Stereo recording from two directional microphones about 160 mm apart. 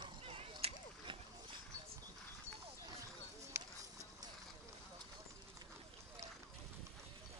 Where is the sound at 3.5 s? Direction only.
20° right (ahead or behind).